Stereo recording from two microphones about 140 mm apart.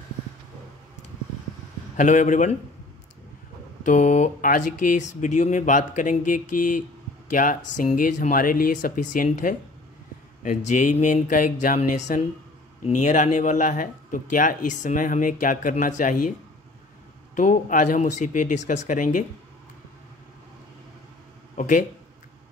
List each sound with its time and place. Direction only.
2.0 s speech: 60° left (ahead or behind)
3.8 s speech: 60° left (ahead or behind)
12.8 s speech: 60° left (ahead or behind)
17.4 s speech: 75° left (ahead or behind)
21.5 s speech: 65° left (ahead or behind)